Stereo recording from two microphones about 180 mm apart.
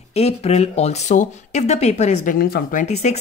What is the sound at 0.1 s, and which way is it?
Speech, 35° left (ahead or behind).